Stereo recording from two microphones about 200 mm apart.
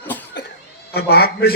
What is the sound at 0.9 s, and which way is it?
Speech, 50° left (ahead or behind).